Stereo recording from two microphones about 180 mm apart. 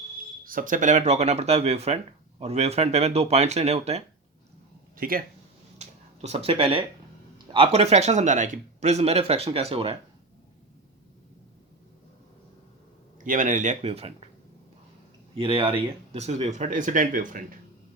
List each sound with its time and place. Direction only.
0.4 s speech: 50° right (ahead or behind)
4.9 s speech: 55° right (ahead or behind)
5.8 s a sound: 35° right (ahead or behind)
7.5 s speech: 30° right (ahead or behind)
13.2 s speech: 45° right (ahead or behind)
15.4 s speech: 30° right (ahead or behind); by 17.4 s 50° right (ahead or behind)